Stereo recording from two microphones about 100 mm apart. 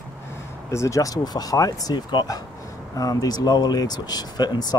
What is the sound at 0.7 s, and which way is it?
Speech, 30° left (ahead or behind).